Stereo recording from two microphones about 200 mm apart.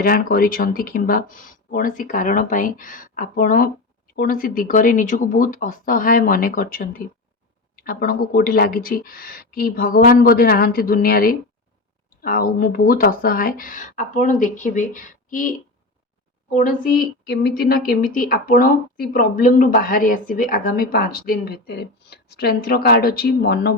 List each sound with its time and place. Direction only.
0.0 s a woman's voice: 45° left (ahead or behind)